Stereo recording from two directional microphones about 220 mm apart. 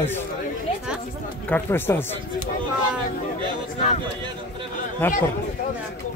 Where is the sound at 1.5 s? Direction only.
10° left (ahead or behind).